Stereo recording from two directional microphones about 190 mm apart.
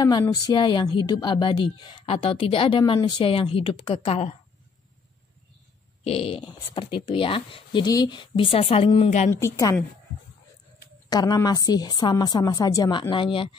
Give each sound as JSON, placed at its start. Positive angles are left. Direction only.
{"t": 0.0, "sound": "a woman's voice", "side_deg": 20}
{"t": 6.0, "sound": "a woman's voice", "side_deg": 30}
{"t": 9.3, "sound": "a woman's voice", "side_deg": 15}
{"t": 11.1, "sound": "a woman's voice", "side_deg": 20}